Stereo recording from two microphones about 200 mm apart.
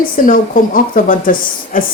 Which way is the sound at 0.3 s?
40° left (ahead or behind).